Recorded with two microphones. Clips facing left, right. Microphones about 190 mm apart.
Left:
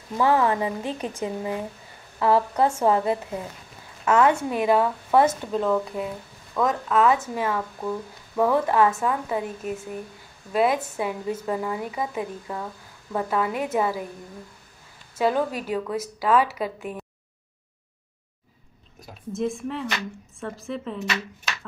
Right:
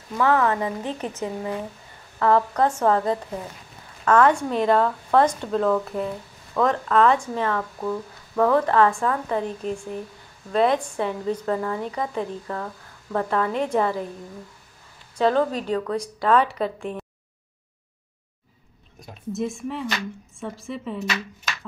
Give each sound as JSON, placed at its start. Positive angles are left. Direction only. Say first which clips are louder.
{"t": 0.2, "sound": "a woman's voice", "louder": "even", "side_deg": 15}
{"t": 15.1, "sound": "a woman's voice", "louder": "right 3 dB", "side_deg": 10}
{"t": 18.9, "sound": "speech", "louder": "right 1 dB", "side_deg": 0}